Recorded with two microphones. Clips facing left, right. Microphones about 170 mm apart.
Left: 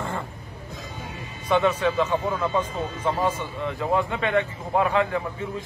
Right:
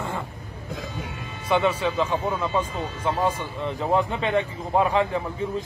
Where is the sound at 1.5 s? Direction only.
10° right (ahead or behind).